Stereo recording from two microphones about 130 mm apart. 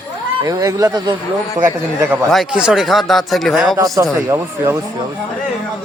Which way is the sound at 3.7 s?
25° right (ahead or behind).